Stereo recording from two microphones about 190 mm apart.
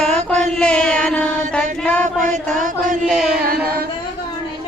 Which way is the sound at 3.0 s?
Centre (ahead or behind).